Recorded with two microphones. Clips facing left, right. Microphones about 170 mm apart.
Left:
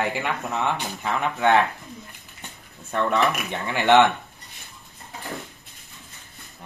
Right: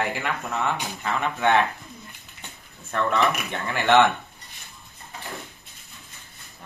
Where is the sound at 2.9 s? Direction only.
15° left (ahead or behind).